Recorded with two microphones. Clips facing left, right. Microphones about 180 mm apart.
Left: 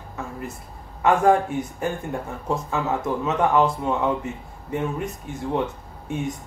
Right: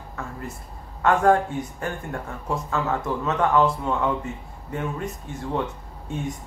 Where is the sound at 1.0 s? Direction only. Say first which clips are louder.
Left 1 dB; 15° left (ahead or behind).